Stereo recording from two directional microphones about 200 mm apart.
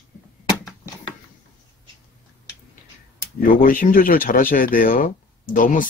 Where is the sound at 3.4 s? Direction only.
45° left (ahead or behind).